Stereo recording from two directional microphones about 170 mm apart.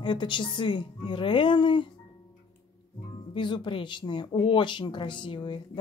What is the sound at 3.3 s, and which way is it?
Speech, 30° left (ahead or behind).